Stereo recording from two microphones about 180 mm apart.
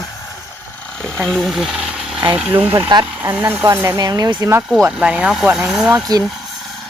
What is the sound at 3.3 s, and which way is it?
Speech, 10° right (ahead or behind).